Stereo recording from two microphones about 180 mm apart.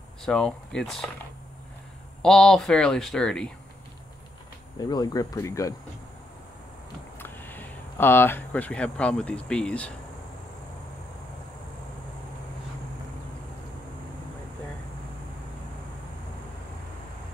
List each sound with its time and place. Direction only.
0.2 s speech: 5° left (ahead or behind)
2.2 s speech: 5° left (ahead or behind)
4.7 s speech: 20° left (ahead or behind)
7.2 s speech: 10° left (ahead or behind)